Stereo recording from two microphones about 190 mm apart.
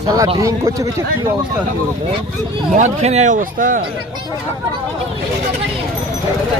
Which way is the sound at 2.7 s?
35° right (ahead or behind).